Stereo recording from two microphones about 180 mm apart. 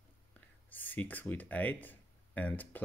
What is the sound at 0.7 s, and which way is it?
Speech, 10° left (ahead or behind).